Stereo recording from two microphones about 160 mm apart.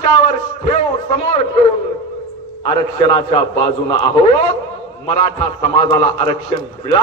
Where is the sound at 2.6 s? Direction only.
35° left (ahead or behind).